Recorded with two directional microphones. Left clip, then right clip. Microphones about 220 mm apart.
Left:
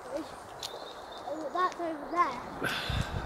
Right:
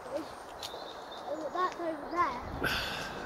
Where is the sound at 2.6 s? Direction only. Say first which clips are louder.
Right 1 dB; 5° right (ahead or behind).